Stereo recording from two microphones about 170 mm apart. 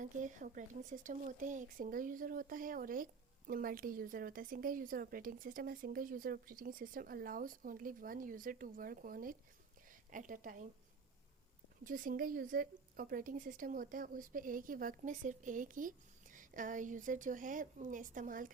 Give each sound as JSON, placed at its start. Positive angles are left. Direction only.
{"t": 0.0, "sound": "speech", "side_deg": -50}
{"t": 11.9, "sound": "speech", "side_deg": -55}